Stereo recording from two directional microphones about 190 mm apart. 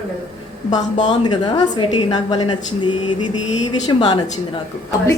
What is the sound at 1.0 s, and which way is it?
A woman's voice, 25° left (ahead or behind).